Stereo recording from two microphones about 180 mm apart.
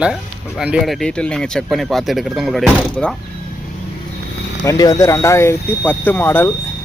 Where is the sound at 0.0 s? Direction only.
5° right (ahead or behind).